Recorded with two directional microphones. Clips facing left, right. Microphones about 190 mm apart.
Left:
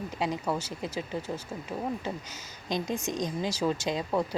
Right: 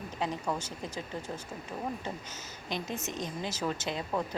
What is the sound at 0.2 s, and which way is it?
Speech, 10° left (ahead or behind).